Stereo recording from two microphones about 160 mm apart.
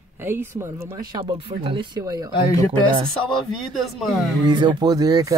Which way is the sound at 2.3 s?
20° left (ahead or behind).